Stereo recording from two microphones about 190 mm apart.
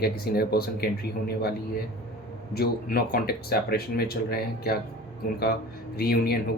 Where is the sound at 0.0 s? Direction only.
55° left (ahead or behind).